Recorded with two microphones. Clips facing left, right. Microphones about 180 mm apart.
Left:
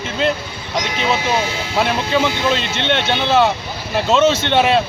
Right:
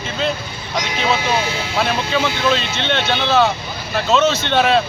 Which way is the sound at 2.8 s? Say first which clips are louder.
Left 1 dB; 25° left (ahead or behind).